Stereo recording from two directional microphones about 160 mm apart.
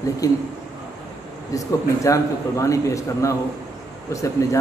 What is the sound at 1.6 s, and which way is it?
A man's voice, 20° left (ahead or behind).